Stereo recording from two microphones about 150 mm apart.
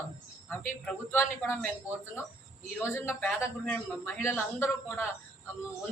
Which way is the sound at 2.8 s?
15° left (ahead or behind).